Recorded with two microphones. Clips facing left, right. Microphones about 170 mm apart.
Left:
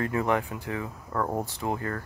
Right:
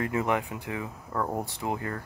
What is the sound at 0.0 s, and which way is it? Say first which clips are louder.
Speech: left 1 dB; 20° right (ahead or behind).